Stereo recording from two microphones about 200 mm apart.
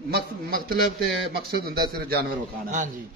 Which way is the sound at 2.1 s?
45° right (ahead or behind).